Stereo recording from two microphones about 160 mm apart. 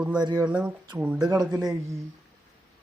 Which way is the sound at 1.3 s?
25° right (ahead or behind).